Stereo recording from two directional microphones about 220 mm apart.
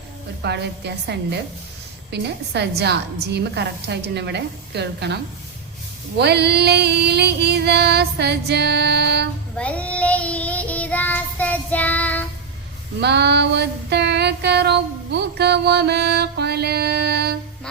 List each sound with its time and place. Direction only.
0.4 s female singing: 50° right (ahead or behind)
9.6 s child singing: 5° left (ahead or behind)
13.0 s female singing: 50° right (ahead or behind)